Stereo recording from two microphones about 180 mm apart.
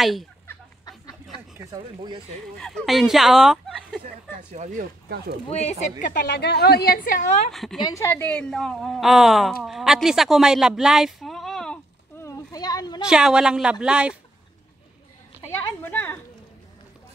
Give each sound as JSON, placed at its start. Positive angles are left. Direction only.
{"t": 0.0, "sound": "a woman's voice", "side_deg": 0}
{"t": 0.5, "sound": "a sound", "side_deg": 20}
{"t": 1.6, "sound": "speech", "side_deg": -20}
{"t": 2.6, "sound": "a woman's voice", "side_deg": 0}
{"t": 4.0, "sound": "speech", "side_deg": -40}
{"t": 5.5, "sound": "speech", "side_deg": 40}
{"t": 6.2, "sound": "a woman's voice", "side_deg": 65}
{"t": 7.5, "sound": "a woman's voice", "side_deg": 0}
{"t": 7.8, "sound": "a woman's voice", "side_deg": 15}
{"t": 12.2, "sound": "a sound", "side_deg": 20}
{"t": 13.0, "sound": "a woman's voice", "side_deg": -5}
{"t": 15.8, "sound": "speech", "side_deg": 10}